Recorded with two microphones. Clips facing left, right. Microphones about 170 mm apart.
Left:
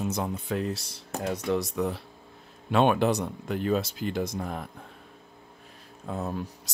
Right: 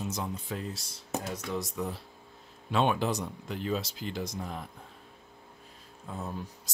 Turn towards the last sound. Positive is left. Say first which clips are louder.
# left 6 dB
turn(degrees=70)  # may be behind; listen again after turning